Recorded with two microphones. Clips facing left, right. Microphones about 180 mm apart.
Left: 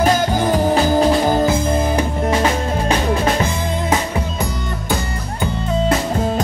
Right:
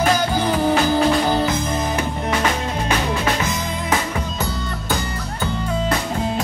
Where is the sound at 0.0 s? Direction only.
45° left (ahead or behind).